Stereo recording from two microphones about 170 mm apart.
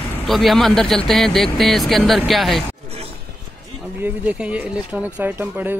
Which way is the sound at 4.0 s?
10° right (ahead or behind).